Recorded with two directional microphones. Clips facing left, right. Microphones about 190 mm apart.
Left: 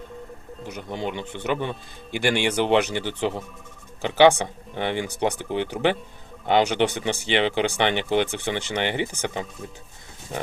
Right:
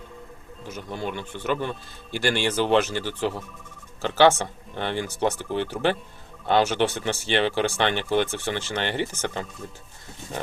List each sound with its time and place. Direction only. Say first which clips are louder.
0.6 s speech: left 2 dB; 15° left (ahead or behind)